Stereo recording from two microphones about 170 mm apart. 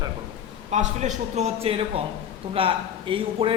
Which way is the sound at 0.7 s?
45° right (ahead or behind).